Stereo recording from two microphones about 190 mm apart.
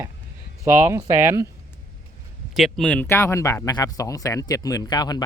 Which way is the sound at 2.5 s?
Centre (ahead or behind).